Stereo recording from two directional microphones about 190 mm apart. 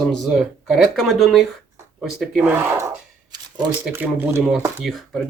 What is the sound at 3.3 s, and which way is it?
Shuffling cards, 20° right (ahead or behind).